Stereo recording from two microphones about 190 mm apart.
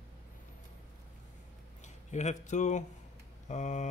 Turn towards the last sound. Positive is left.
turn(degrees=40)  # may be behind; listen again after turning